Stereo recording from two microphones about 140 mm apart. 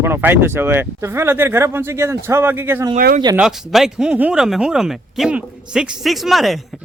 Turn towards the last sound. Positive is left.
turn(degrees=0)  # may be behind; listen again after turning